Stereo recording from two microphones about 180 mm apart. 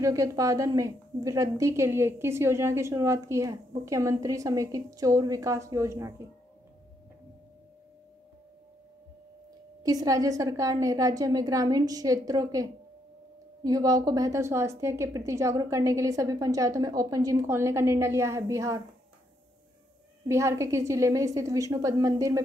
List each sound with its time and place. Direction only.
0.0 s a woman's voice: 15° right (ahead or behind)
9.8 s a woman's voice: 20° right (ahead or behind)
20.2 s a woman's voice: 15° right (ahead or behind)